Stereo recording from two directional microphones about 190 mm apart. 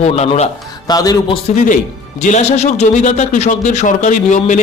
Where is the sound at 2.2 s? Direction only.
35° left (ahead or behind).